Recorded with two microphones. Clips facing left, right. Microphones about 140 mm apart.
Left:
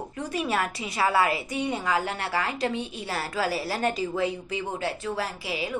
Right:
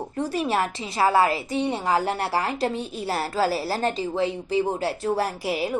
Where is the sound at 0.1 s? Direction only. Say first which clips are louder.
Right 4 dB; 30° right (ahead or behind).